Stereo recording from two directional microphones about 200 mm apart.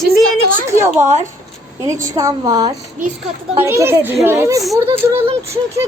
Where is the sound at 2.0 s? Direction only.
15° right (ahead or behind).